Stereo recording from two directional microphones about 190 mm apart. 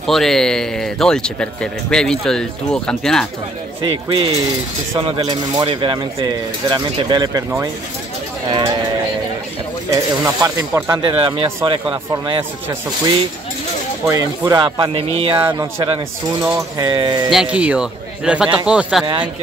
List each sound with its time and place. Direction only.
0.0 s speech: centre (ahead or behind)
3.8 s speech: 25° right (ahead or behind)
9.8 s speech: 15° right (ahead or behind)
14.0 s speech: 15° right (ahead or behind)
15.3 s speech: 15° right (ahead or behind)
17.3 s speech: 5° right (ahead or behind)